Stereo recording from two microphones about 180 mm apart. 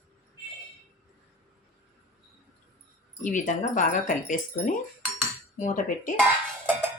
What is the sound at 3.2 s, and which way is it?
Speech, 45° left (ahead or behind).